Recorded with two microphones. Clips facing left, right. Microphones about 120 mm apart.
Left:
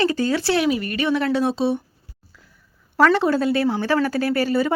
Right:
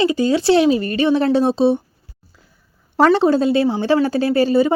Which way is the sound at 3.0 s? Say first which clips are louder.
Right 4 dB; 25° right (ahead or behind).